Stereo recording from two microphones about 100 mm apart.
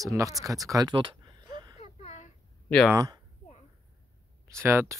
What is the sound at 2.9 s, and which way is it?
Speech, 40° right (ahead or behind).